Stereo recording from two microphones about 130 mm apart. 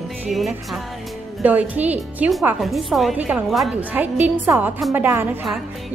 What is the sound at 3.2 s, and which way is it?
Speech, 10° right (ahead or behind).